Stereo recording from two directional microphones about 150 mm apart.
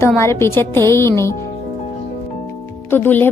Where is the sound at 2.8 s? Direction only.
15° left (ahead or behind).